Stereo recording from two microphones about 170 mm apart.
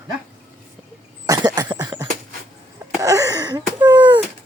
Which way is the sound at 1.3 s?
20° right (ahead or behind).